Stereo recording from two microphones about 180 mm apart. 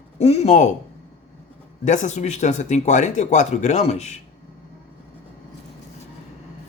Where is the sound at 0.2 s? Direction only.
35° left (ahead or behind).